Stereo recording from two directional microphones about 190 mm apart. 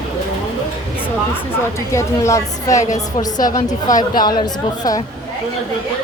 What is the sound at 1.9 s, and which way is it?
Speech, 15° left (ahead or behind).